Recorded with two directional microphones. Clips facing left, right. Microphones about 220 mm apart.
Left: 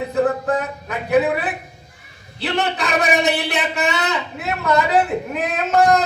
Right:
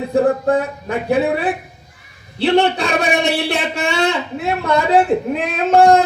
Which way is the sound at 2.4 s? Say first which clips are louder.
Right 7 dB; 30° right (ahead or behind).